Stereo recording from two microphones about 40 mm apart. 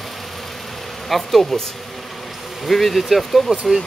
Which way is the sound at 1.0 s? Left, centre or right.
Centre.